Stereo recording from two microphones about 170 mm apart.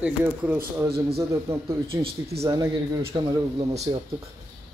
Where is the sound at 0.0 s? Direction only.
10° right (ahead or behind); by 3.8 s 25° right (ahead or behind).